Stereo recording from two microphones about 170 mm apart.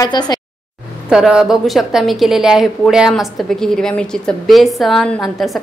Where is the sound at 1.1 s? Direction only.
5° right (ahead or behind).